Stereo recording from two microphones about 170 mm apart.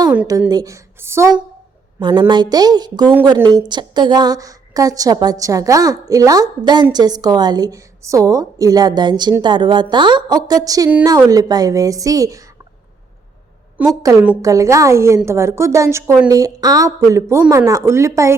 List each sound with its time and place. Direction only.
0.3 s a woman's voice: 20° right (ahead or behind)
2.0 s a woman's voice: 25° right (ahead or behind)
13.8 s a woman's voice: 10° right (ahead or behind)